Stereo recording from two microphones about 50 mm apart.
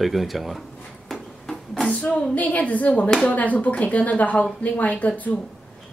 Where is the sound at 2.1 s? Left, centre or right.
Left.